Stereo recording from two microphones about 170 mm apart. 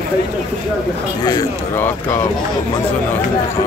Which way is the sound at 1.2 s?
25° left (ahead or behind).